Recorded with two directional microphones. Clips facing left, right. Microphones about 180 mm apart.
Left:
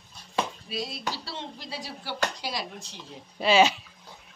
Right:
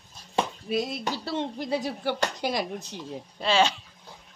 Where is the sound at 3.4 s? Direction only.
10° left (ahead or behind).